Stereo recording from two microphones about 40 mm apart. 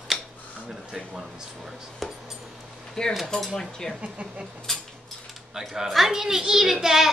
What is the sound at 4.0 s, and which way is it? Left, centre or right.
Speech, right.